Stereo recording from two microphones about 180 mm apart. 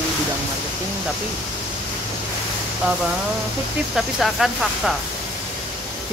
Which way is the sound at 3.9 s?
Centre (ahead or behind).